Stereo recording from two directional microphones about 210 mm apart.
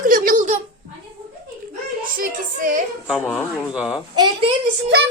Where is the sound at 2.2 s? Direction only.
40° right (ahead or behind).